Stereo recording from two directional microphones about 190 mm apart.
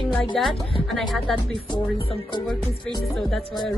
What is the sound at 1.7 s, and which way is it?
Speech, 25° left (ahead or behind).